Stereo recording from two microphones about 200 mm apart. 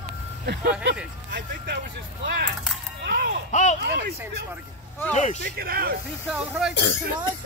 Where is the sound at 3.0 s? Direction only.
55° right (ahead or behind).